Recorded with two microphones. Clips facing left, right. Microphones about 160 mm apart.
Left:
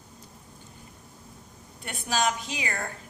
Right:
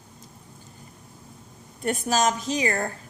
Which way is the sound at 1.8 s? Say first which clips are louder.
Right 5 dB; 45° right (ahead or behind).